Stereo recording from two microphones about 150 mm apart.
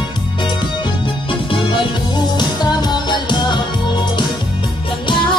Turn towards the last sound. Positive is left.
turn(degrees=30)  # may be behind; listen again after turning